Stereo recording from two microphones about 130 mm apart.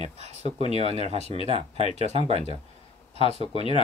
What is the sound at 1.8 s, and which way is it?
Speech, 50° left (ahead or behind).